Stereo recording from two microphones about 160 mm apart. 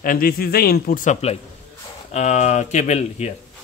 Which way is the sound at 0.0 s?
60° left (ahead or behind).